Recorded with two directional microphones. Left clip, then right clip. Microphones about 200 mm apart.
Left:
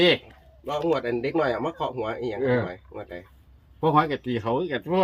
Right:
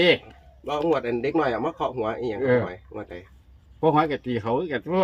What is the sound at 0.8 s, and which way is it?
Speech, 45° right (ahead or behind).